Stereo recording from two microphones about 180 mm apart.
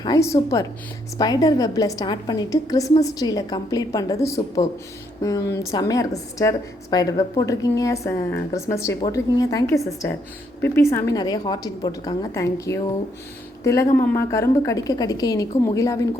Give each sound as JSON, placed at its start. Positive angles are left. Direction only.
{"t": 0.0, "sound": "a woman's voice", "side_deg": 20}